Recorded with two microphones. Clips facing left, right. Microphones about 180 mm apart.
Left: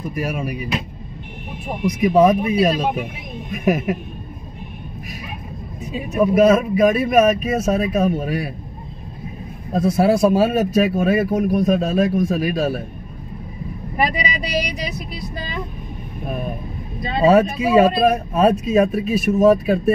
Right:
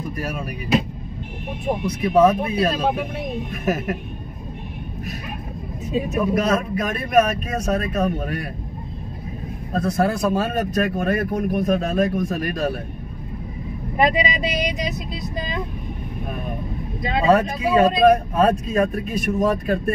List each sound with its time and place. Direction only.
0.1 s speech: 10° left (ahead or behind)
1.9 s speech: 15° left (ahead or behind)
6.3 s speech: 10° left (ahead or behind)
9.7 s speech: 10° left (ahead or behind)
13.9 s speech: 20° right (ahead or behind)
17.3 s speech: 10° left (ahead or behind)